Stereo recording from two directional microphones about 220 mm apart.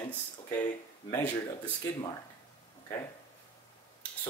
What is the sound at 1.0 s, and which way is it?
Speech, 10° left (ahead or behind).